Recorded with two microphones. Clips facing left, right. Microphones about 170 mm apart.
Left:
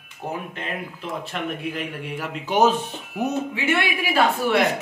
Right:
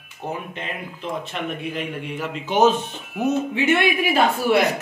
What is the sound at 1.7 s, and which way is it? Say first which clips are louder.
A man's voice: right 2 dB; 5° left (ahead or behind).